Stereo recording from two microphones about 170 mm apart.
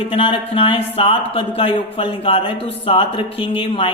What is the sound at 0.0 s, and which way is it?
Speech, 30° left (ahead or behind).